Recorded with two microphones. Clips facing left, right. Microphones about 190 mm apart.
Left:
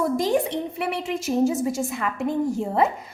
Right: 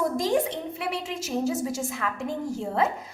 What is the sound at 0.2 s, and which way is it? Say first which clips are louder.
A woman's voice: left 3 dB; 60° left (ahead or behind).